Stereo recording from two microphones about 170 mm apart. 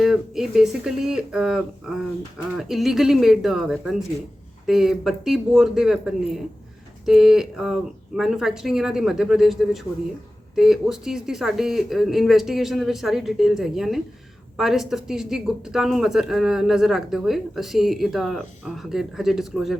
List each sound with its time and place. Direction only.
0.0 s speech: centre (ahead or behind)